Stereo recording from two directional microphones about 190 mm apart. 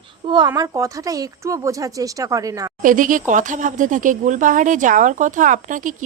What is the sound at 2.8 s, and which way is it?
Speech, 45° right (ahead or behind).